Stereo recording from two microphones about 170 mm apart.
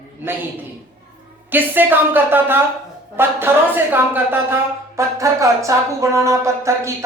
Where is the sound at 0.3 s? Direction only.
15° right (ahead or behind).